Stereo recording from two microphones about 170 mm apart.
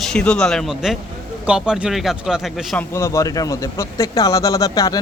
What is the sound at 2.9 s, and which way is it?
Speech, 15° left (ahead or behind).